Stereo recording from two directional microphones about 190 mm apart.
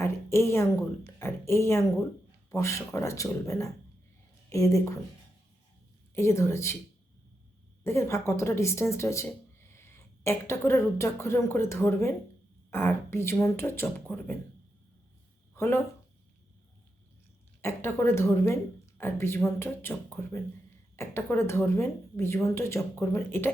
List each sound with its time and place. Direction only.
0.0 s a woman's voice: 15° left (ahead or behind)
6.1 s speech: 15° left (ahead or behind)
7.9 s speech: 15° left (ahead or behind)
15.5 s speech: 15° left (ahead or behind)
17.6 s speech: 15° left (ahead or behind)